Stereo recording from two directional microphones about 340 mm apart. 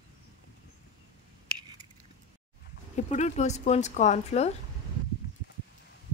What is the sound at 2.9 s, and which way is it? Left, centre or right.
Speech, centre.